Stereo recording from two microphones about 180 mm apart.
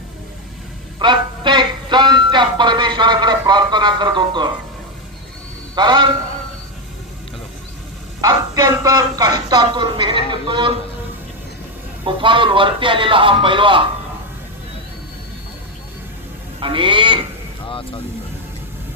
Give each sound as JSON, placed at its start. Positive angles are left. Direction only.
{"t": 0.9, "sound": "music", "side_deg": -25}
{"t": 5.7, "sound": "speech", "side_deg": -25}
{"t": 8.2, "sound": "speech", "side_deg": -20}
{"t": 12.0, "sound": "speech", "side_deg": -25}
{"t": 16.6, "sound": "a sound", "side_deg": -30}
{"t": 17.7, "sound": "vehicle", "side_deg": 30}